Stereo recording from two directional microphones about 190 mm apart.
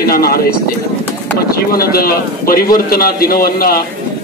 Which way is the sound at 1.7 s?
50° left (ahead or behind).